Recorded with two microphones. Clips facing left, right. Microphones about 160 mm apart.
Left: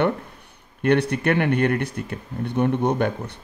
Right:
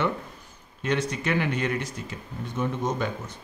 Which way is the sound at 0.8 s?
60° left (ahead or behind).